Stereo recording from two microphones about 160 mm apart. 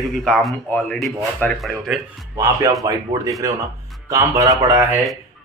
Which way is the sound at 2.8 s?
20° right (ahead or behind).